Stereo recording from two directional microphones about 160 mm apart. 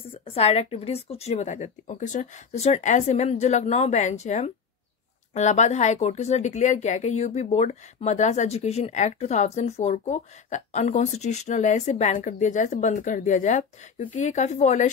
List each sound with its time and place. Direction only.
0.1 s speech: 35° left (ahead or behind)